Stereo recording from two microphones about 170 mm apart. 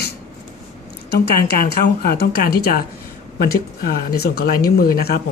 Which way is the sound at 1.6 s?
65° left (ahead or behind).